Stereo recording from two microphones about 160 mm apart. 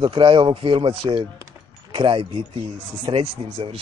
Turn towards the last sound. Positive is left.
turn(degrees=-35)  # may be behind; listen again after turning